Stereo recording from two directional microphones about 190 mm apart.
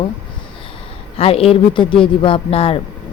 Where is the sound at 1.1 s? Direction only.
30° left (ahead or behind).